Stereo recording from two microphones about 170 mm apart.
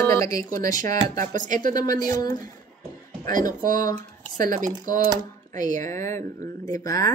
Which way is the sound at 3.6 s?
55° right (ahead or behind).